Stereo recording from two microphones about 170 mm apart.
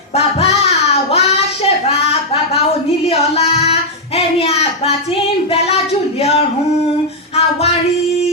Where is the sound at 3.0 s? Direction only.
35° left (ahead or behind).